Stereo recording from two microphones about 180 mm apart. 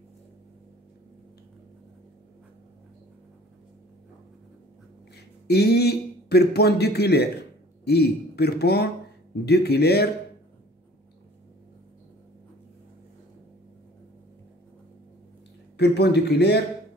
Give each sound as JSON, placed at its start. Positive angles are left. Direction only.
{"t": 5.1, "sound": "speech", "side_deg": 65}
{"t": 15.8, "sound": "speech", "side_deg": 70}